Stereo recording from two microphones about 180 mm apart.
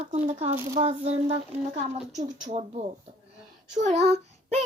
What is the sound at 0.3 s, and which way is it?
A child's voice, 35° right (ahead or behind).